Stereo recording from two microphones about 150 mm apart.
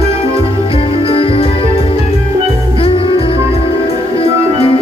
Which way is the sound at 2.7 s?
35° left (ahead or behind).